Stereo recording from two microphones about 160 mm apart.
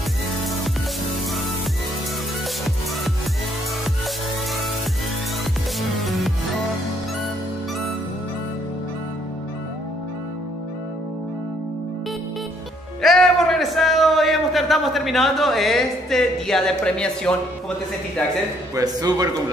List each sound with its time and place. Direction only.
5.8 s music: centre (ahead or behind)
13.0 s a sound: centre (ahead or behind)
18.8 s a man's voice: 25° right (ahead or behind)